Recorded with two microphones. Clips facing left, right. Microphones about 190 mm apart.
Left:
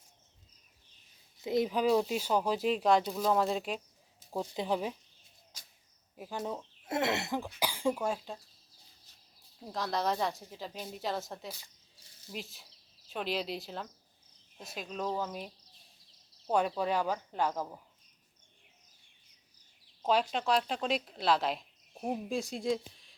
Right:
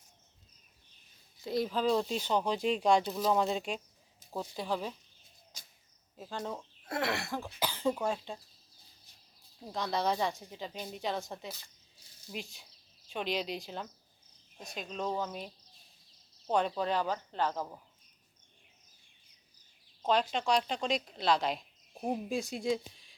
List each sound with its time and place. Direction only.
1.4 s speech: 20° left (ahead or behind); by 3.8 s centre (ahead or behind)
4.3 s speech: 15° left (ahead or behind)
6.1 s speech: 10° left (ahead or behind)
6.6 s speech: 20° left (ahead or behind); by 8.4 s 5° left (ahead or behind)
9.6 s speech: centre (ahead or behind)
20.0 s speech: 5° left (ahead or behind)